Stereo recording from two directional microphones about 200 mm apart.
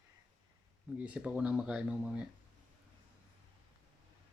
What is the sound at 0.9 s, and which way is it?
Speech, 5° right (ahead or behind).